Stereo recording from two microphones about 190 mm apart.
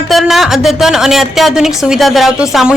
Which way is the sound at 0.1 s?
Centre (ahead or behind).